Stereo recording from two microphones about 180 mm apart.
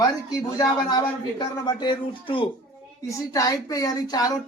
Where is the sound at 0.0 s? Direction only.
20° left (ahead or behind).